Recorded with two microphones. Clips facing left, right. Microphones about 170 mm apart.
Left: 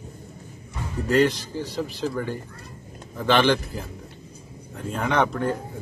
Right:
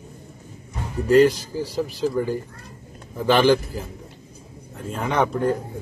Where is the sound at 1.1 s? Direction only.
5° right (ahead or behind).